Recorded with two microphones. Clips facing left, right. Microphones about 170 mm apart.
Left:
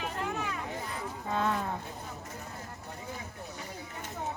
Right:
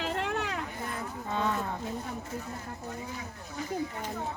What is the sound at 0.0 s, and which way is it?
Hubbub, 75° right (ahead or behind).